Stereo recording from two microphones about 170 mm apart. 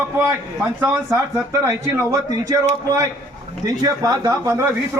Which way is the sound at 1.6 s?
20° right (ahead or behind).